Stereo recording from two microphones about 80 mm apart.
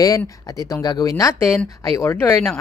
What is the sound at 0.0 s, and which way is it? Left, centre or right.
Speech, left.